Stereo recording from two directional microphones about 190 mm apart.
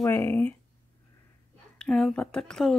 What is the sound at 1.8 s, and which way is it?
Speech, 5° left (ahead or behind).